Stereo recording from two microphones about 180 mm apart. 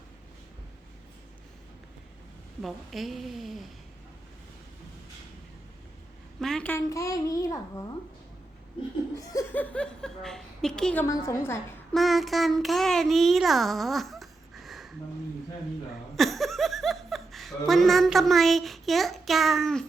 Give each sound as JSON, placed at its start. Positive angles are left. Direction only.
{"t": 2.6, "sound": "a woman's voice", "side_deg": 0}
{"t": 6.4, "sound": "a child's voice", "side_deg": 5}
{"t": 8.8, "sound": "laughter", "side_deg": 30}
{"t": 9.1, "sound": "a woman's voice", "side_deg": 15}
{"t": 11.0, "sound": "a child's voice", "side_deg": 15}
{"t": 11.9, "sound": "a child's voice", "side_deg": 0}
{"t": 16.1, "sound": "speech", "side_deg": 0}